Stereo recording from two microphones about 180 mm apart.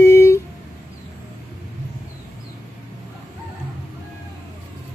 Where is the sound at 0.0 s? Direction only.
15° left (ahead or behind).